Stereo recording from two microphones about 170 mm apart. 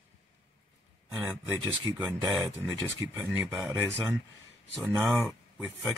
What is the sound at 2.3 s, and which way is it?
Speech, centre (ahead or behind).